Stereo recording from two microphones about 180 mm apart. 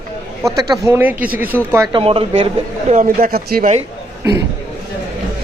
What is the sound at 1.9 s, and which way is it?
Speech, 30° right (ahead or behind).